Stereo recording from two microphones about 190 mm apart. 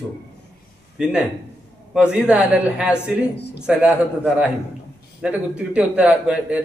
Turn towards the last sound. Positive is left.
turn(degrees=-5)  # may be behind; listen again after turning